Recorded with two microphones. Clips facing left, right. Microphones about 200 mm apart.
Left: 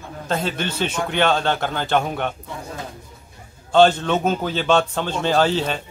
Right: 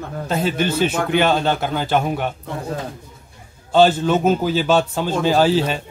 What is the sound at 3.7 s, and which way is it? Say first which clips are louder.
A man's voice: right 1 dB; 5° right (ahead or behind).